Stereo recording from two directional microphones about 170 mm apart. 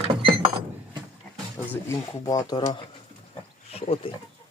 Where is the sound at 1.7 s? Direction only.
20° left (ahead or behind); by 4.1 s 35° left (ahead or behind).